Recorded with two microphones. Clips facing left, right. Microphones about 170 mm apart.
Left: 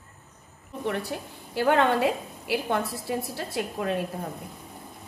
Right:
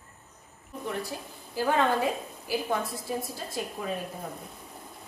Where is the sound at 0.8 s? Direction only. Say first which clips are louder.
Left 4 dB; 70° left (ahead or behind).